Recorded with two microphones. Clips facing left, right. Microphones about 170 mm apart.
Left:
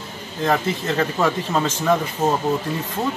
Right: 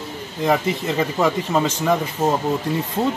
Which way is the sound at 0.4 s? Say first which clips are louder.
Right 1 dB; 10° right (ahead or behind).